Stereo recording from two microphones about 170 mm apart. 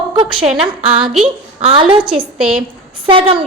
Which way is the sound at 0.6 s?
30° right (ahead or behind).